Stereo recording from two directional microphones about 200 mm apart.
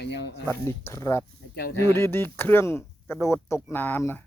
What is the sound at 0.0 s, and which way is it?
Speech, 60° left (ahead or behind).